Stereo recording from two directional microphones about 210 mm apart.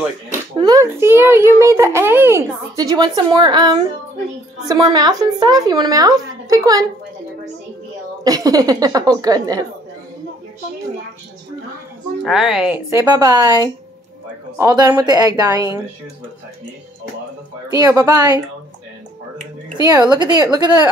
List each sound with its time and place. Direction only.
0.6 s a child's voice: 15° right (ahead or behind)
8.2 s a child's voice: 15° right (ahead or behind)
12.3 s speech: centre (ahead or behind)
13.0 s a child's voice: 20° right (ahead or behind)
17.6 s a child's voice: 20° right (ahead or behind)
19.8 s speech: 20° right (ahead or behind)